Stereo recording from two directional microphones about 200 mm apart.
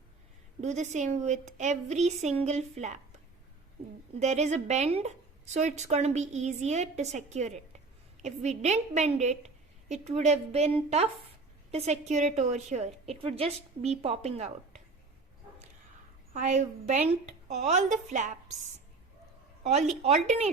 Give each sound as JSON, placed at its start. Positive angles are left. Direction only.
{"t": 0.6, "sound": "a woman's voice", "side_deg": -35}
{"t": 4.2, "sound": "a woman's voice", "side_deg": -35}
{"t": 16.3, "sound": "a woman's voice", "side_deg": -35}
{"t": 19.6, "sound": "a woman's voice", "side_deg": -35}